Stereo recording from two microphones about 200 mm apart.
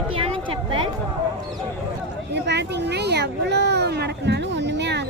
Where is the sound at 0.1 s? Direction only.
25° right (ahead or behind).